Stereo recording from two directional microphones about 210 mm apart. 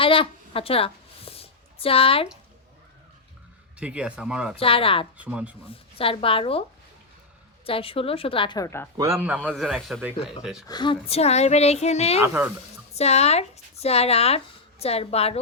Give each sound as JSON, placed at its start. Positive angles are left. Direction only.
{"t": 0.0, "sound": "a sound", "side_deg": 25}
{"t": 3.8, "sound": "speech", "side_deg": -5}
{"t": 4.5, "sound": "a woman's voice", "side_deg": 25}
{"t": 5.1, "sound": "a man's voice", "side_deg": -5}
{"t": 5.6, "sound": "a woman's voice", "side_deg": 25}
{"t": 9.0, "sound": "a man's voice", "side_deg": -15}
{"t": 9.4, "sound": "speech", "side_deg": 0}
{"t": 10.7, "sound": "speech", "side_deg": 20}
{"t": 12.2, "sound": "a man's voice", "side_deg": -10}
{"t": 12.9, "sound": "speech", "side_deg": 30}